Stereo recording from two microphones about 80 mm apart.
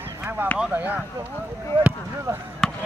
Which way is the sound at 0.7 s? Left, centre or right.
Centre.